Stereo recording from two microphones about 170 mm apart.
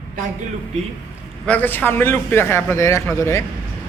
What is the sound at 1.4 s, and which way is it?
A man's voice, 10° left (ahead or behind).